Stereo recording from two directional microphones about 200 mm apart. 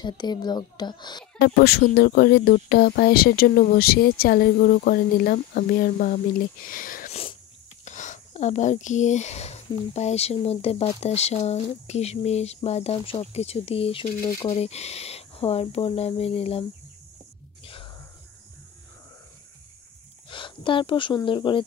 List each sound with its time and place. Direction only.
0.0 s speech: 20° left (ahead or behind)
1.4 s speech: 50° left (ahead or behind); by 16.6 s 30° left (ahead or behind)
17.6 s a sound: 25° left (ahead or behind)
20.2 s speech: 25° left (ahead or behind)